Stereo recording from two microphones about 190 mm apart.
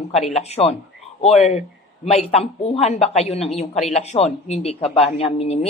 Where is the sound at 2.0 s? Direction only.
30° left (ahead or behind).